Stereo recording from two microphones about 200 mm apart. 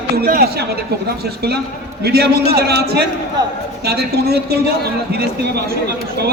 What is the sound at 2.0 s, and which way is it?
A man's voice, 50° right (ahead or behind).